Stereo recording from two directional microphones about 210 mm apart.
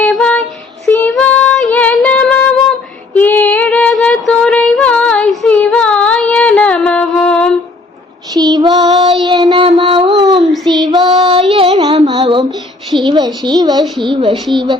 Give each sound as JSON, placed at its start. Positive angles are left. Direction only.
{"t": 0.0, "sound": "child singing", "side_deg": 5}
{"t": 0.9, "sound": "female singing", "side_deg": 5}
{"t": 3.2, "sound": "child singing", "side_deg": 10}
{"t": 8.3, "sound": "child singing", "side_deg": -20}
{"t": 10.4, "sound": "child singing", "side_deg": 0}
{"t": 10.8, "sound": "female singing", "side_deg": -20}
{"t": 12.0, "sound": "child singing", "side_deg": -20}
{"t": 14.0, "sound": "a woman's voice", "side_deg": -25}